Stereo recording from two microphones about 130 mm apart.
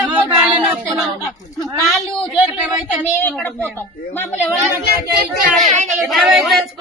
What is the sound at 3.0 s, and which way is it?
Speech, 15° left (ahead or behind).